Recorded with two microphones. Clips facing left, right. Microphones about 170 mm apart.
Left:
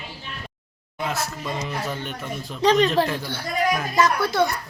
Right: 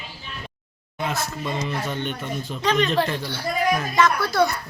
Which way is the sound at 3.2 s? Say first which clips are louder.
Even; 55° left (ahead or behind).